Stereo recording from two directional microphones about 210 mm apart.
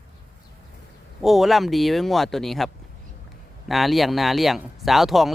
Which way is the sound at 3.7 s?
Centre (ahead or behind).